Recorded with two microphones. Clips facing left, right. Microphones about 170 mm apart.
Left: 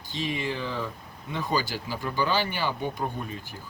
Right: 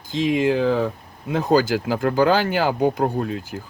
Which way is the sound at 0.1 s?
90° right.